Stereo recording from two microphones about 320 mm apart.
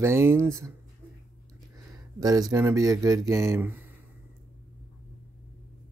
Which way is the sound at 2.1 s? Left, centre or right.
Centre.